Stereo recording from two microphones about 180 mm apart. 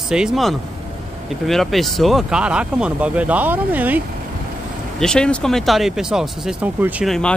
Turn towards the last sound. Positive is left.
turn(degrees=0)  # may be behind; listen again after turning